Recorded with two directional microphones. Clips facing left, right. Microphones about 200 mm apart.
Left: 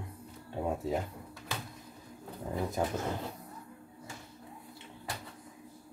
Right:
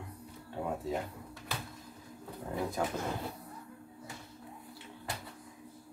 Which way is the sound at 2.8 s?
20° left (ahead or behind).